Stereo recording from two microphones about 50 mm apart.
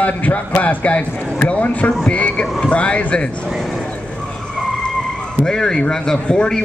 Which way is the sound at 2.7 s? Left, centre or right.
Left.